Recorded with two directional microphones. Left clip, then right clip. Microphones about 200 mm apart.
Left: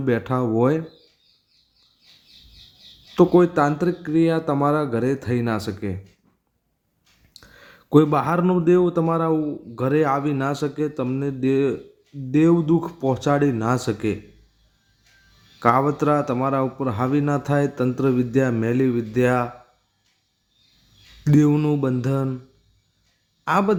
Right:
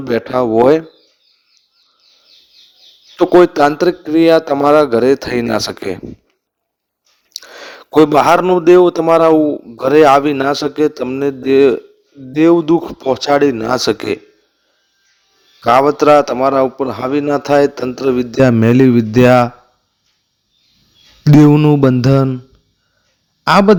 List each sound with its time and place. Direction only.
0.1 s a man's voice: 40° right (ahead or behind)
3.3 s a man's voice: 40° right (ahead or behind)
7.4 s a man's voice: 50° right (ahead or behind)
15.7 s a man's voice: 40° right (ahead or behind)
21.2 s a man's voice: 40° right (ahead or behind)
23.4 s speech: 40° right (ahead or behind)